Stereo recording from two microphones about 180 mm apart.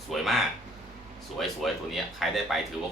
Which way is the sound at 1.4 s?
Centre (ahead or behind).